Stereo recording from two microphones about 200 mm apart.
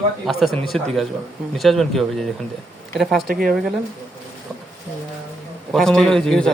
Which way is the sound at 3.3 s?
45° right (ahead or behind).